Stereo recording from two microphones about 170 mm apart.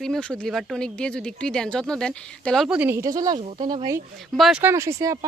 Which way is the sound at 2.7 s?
15° right (ahead or behind).